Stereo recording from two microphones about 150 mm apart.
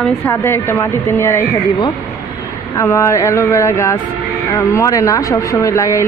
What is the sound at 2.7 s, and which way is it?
Speech, 20° left (ahead or behind).